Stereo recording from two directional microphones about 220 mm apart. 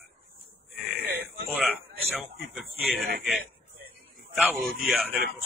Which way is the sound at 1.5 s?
Centre (ahead or behind).